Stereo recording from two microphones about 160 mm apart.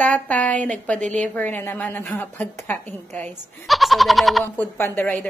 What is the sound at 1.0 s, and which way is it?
Speech, 50° right (ahead or behind).